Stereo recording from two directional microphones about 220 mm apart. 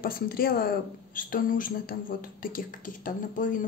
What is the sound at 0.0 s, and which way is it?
A woman's voice, 40° left (ahead or behind).